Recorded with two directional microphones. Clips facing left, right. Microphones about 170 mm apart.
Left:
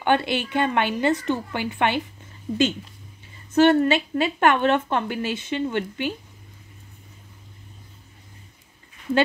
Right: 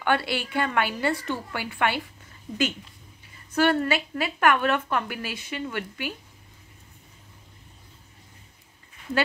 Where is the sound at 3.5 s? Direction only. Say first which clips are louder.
Left 6 dB; 25° left (ahead or behind).